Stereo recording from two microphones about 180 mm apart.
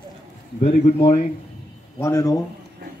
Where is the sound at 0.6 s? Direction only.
45° left (ahead or behind).